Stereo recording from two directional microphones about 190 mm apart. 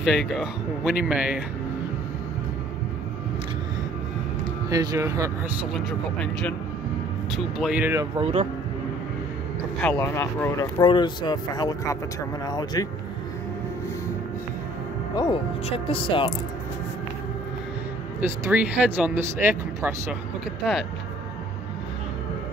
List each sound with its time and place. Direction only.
0.0 s speech: centre (ahead or behind)
4.6 s speech: 15° right (ahead or behind)
5.9 s speech: 5° left (ahead or behind); by 8.1 s 10° right (ahead or behind)
8.2 s speech: 35° right (ahead or behind)
9.8 s speech: 10° left (ahead or behind)
15.9 s speech: 25° left (ahead or behind)
18.2 s speech: 10° right (ahead or behind)